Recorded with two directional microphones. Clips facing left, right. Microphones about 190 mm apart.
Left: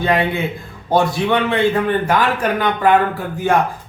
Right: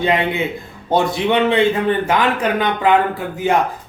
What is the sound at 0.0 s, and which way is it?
A man's voice, 20° right (ahead or behind).